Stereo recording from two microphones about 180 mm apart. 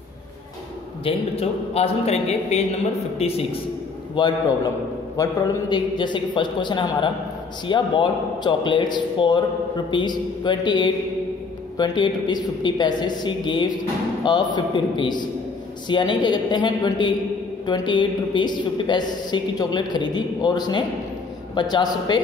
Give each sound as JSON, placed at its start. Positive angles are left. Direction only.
{"t": 1.0, "sound": "a man's voice", "side_deg": 35}